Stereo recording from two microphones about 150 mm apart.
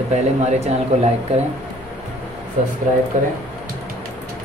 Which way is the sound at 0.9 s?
45° right (ahead or behind).